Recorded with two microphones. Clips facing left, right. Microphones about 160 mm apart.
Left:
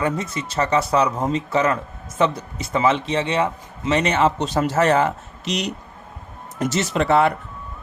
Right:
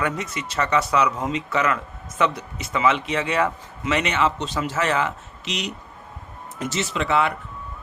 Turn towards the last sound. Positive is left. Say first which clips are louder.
# left 5 dB
turn(degrees=45)  # may be behind; listen again after turning